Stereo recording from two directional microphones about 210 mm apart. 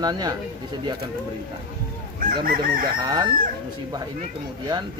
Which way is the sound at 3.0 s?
20° right (ahead or behind).